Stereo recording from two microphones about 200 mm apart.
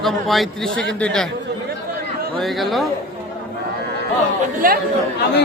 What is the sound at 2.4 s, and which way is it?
Speech, centre (ahead or behind).